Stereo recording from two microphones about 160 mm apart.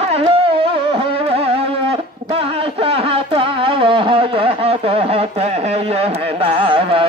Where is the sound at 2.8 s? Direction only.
35° right (ahead or behind).